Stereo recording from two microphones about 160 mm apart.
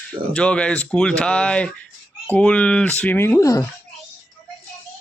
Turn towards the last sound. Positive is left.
turn(degrees=20)  # may be behind; listen again after turning